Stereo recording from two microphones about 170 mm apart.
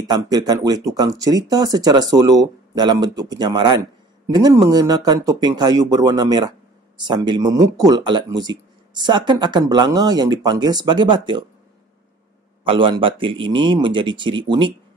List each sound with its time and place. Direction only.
0.0 s speech: 25° right (ahead or behind)
12.6 s speech: 30° right (ahead or behind)